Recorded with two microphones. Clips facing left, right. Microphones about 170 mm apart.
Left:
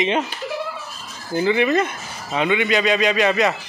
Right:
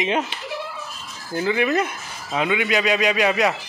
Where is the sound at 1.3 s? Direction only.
Centre (ahead or behind).